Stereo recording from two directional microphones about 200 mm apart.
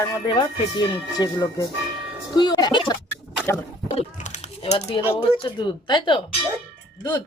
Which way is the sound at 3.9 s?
35° left (ahead or behind).